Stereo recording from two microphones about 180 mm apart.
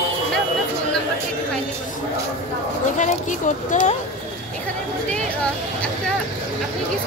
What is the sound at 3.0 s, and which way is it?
Speech, 45° left (ahead or behind).